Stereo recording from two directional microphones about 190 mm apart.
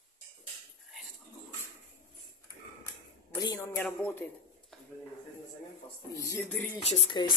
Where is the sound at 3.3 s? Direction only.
20° left (ahead or behind).